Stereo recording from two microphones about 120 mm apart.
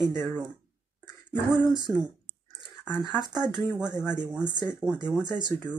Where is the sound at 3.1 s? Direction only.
35° right (ahead or behind).